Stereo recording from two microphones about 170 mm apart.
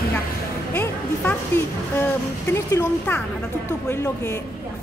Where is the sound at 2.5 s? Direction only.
15° left (ahead or behind).